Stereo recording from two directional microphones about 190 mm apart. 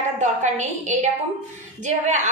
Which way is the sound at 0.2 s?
40° right (ahead or behind).